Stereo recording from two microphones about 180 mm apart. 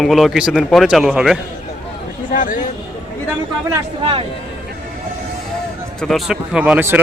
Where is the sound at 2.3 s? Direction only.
45° left (ahead or behind).